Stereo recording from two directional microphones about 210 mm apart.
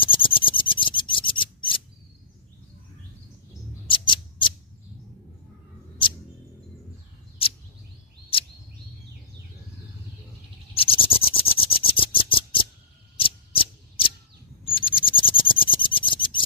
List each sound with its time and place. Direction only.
0.0 s filing: 25° left (ahead or behind)
3.8 s mouse: 25° left (ahead or behind)
10.8 s a sound: 25° left (ahead or behind)
14.6 s owl: 25° left (ahead or behind)